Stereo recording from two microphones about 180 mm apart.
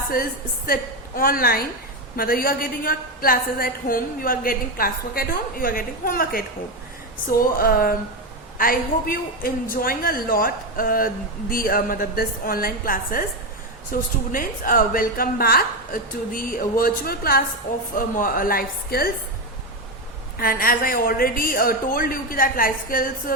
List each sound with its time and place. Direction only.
0.7 s a man's voice: 55° left (ahead or behind)
20.4 s a man's voice: 55° left (ahead or behind)